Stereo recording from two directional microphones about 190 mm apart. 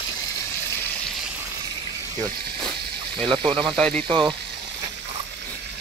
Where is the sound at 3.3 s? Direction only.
25° right (ahead or behind).